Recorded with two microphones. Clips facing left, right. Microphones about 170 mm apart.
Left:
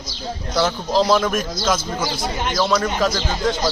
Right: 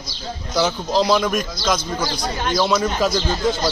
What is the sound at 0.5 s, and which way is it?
Speech, centre (ahead or behind).